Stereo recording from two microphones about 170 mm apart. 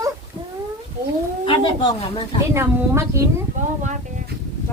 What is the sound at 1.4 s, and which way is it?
Speech, 30° left (ahead or behind).